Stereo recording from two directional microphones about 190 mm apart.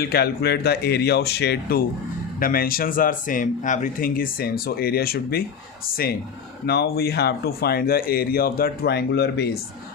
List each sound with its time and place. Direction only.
0.0 s speech: 55° left (ahead or behind)
6.7 s speech: 55° left (ahead or behind)